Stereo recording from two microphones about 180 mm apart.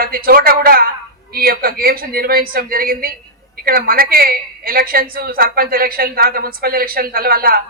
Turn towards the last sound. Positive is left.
turn(degrees=-55)  # may be behind; listen again after turning